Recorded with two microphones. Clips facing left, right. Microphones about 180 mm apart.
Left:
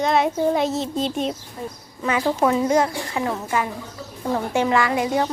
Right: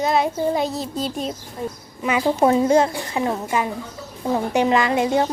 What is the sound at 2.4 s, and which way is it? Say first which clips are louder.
Speech: right 3 dB; 30° right (ahead or behind).